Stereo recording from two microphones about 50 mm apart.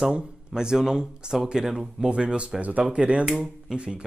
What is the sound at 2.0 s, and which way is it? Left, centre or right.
Speech, right.